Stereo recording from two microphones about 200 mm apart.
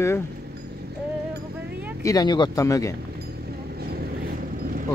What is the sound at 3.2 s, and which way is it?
Vehicle, 50° right (ahead or behind).